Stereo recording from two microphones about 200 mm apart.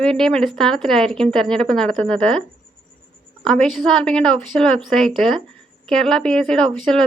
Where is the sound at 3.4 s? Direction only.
Centre (ahead or behind).